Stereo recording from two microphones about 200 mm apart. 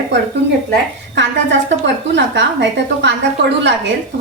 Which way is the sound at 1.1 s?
60° right (ahead or behind).